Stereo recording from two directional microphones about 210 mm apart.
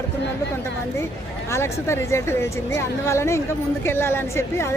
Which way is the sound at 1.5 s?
15° left (ahead or behind).